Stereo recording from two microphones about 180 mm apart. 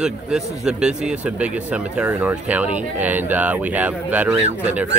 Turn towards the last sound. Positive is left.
turn(degrees=-10)  # may be behind; listen again after turning